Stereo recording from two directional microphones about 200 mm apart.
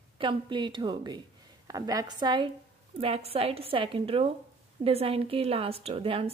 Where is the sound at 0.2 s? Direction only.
25° right (ahead or behind).